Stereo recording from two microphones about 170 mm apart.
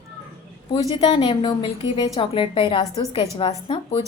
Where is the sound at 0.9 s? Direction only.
30° left (ahead or behind).